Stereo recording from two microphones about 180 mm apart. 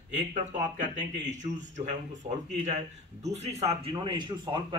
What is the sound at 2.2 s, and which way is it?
Speech, 40° right (ahead or behind).